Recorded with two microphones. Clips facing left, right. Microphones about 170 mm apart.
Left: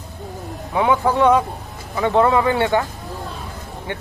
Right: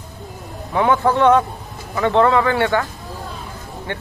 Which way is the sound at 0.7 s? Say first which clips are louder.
Right 1 dB; 10° left (ahead or behind).